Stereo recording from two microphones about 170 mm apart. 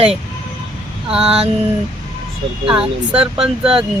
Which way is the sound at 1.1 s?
5° right (ahead or behind).